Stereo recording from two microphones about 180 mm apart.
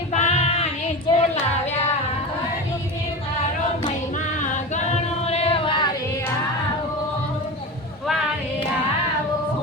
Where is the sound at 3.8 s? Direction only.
45° left (ahead or behind); by 5.9 s 25° left (ahead or behind).